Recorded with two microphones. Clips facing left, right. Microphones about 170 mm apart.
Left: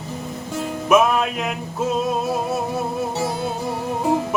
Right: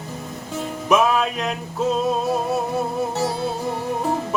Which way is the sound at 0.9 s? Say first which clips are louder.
Left 1 dB; 5° left (ahead or behind).